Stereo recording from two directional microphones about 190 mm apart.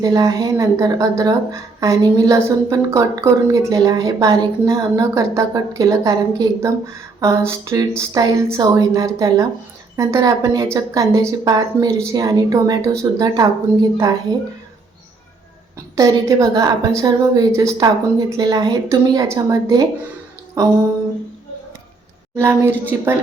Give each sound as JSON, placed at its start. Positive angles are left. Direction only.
{"t": 0.0, "sound": "speech", "side_deg": -20}
{"t": 16.0, "sound": "speech", "side_deg": -15}
{"t": 22.4, "sound": "speech", "side_deg": -15}